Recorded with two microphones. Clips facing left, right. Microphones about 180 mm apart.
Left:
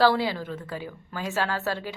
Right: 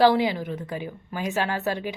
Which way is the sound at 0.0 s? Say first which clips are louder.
Right 3 dB; 15° right (ahead or behind).